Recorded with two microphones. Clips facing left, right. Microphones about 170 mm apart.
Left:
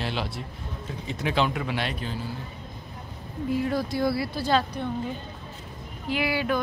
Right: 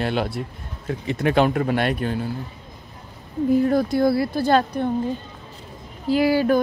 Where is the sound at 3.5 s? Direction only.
50° right (ahead or behind).